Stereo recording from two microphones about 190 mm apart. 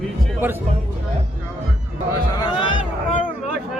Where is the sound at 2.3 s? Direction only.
25° left (ahead or behind).